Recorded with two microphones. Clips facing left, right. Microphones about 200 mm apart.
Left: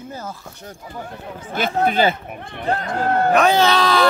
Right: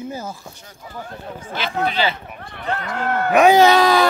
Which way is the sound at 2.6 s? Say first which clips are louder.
Left 3 dB; 35° left (ahead or behind).